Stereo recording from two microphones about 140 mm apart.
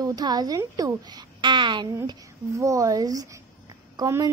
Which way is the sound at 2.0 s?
25° right (ahead or behind).